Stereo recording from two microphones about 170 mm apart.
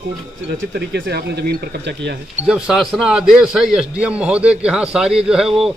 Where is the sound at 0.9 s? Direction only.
70° right (ahead or behind).